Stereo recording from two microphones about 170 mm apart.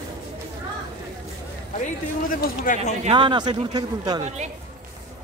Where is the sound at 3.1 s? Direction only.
25° right (ahead or behind).